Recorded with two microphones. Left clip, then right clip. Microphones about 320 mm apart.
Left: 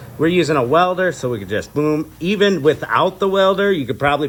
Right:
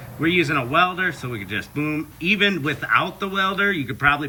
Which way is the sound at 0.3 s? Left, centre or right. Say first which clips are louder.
Left 4 dB; centre.